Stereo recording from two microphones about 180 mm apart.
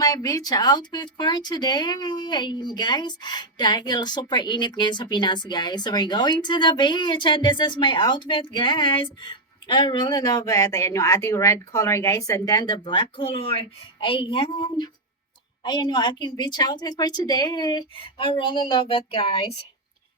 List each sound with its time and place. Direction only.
0.0 s speech: 20° left (ahead or behind)